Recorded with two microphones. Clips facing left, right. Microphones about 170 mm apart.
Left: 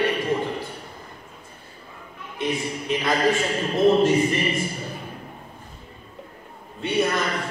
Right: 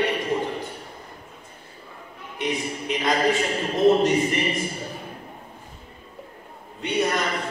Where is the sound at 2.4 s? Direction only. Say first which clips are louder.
Left 1 dB; 20° right (ahead or behind).